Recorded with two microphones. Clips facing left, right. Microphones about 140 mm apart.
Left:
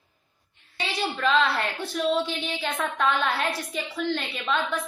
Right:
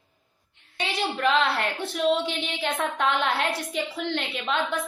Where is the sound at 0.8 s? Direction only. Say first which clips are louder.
Right 1 dB; 20° right (ahead or behind).